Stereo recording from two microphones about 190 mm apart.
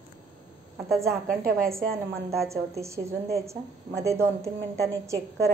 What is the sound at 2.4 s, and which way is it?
A woman's voice, 15° right (ahead or behind).